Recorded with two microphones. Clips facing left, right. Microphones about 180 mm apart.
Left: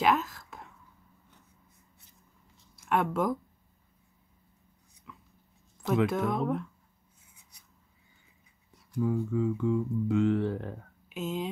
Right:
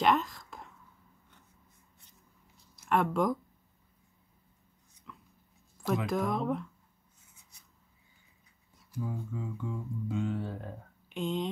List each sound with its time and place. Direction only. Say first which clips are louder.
0.0 s whispering: left 1 dB; centre (ahead or behind)
2.9 s speech: even; centre (ahead or behind)
5.1 s dog: even; 5° left (ahead or behind)
6.0 s speech: left 2 dB; centre (ahead or behind)
9.0 s speech: left 10 dB; 75° left (ahead or behind)
11.1 s speech: right 1 dB; 5° left (ahead or behind)